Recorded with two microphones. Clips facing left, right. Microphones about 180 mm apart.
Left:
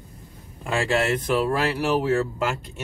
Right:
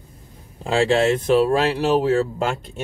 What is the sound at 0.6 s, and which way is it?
Speech, 30° right (ahead or behind).